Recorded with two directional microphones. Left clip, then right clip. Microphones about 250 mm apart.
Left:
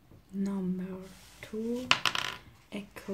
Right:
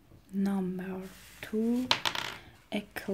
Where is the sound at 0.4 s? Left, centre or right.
Right.